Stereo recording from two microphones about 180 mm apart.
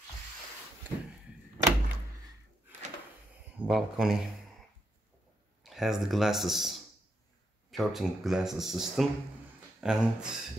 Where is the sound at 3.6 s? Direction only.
Centre (ahead or behind).